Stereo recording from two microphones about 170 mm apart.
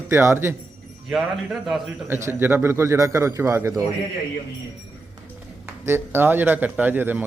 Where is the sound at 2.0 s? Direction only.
15° right (ahead or behind).